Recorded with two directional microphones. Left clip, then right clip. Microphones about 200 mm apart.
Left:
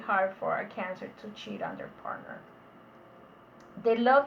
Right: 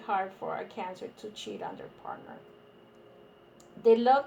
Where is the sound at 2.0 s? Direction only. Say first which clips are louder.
Left 3 dB; 50° right (ahead or behind).